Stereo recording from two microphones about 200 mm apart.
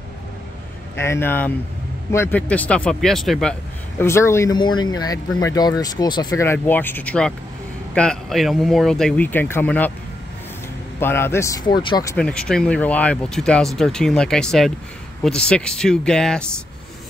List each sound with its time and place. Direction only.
0.9 s speech: 10° left (ahead or behind)
4.0 s speech: 15° left (ahead or behind)
11.0 s speech: 10° left (ahead or behind)